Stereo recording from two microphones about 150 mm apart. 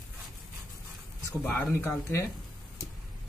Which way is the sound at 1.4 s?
15° left (ahead or behind).